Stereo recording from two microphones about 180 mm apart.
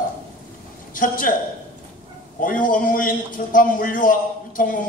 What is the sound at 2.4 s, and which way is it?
A man's voice, 50° left (ahead or behind).